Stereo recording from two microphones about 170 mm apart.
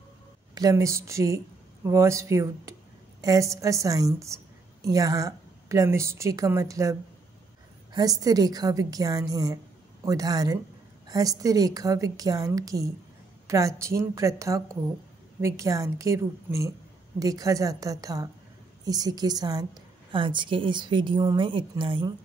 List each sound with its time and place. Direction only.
0.6 s a woman's voice: 20° right (ahead or behind)